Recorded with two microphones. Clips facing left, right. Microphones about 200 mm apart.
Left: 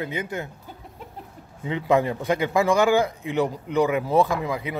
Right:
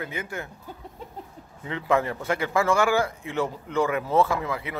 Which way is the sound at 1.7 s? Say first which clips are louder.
Left 3 dB; 20° left (ahead or behind).